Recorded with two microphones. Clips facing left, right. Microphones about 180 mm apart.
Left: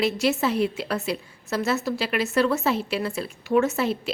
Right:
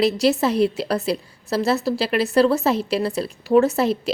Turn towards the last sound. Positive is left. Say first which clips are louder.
# right 5 dB
turn(degrees=-35)  # may be behind; listen again after turning